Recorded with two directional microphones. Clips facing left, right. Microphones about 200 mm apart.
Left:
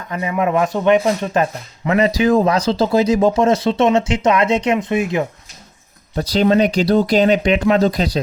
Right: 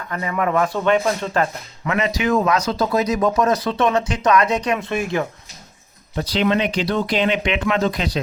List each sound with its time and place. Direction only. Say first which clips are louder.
0.1 s speech: left 3 dB; 20° left (ahead or behind)
1.9 s speech: left 5 dB; 35° left (ahead or behind); by 5.3 s 20° left (ahead or behind)
6.1 s speech: left 5 dB; 40° left (ahead or behind)